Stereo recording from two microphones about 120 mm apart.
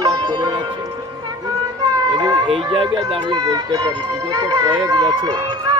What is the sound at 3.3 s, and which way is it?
Speech, 30° right (ahead or behind).